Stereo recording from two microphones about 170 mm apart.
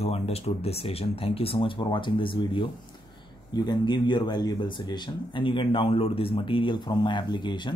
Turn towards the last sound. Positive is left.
turn(degrees=25)  # may be behind; listen again after turning